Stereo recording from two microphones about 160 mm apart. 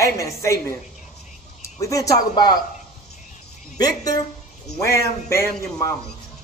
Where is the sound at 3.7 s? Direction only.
25° left (ahead or behind).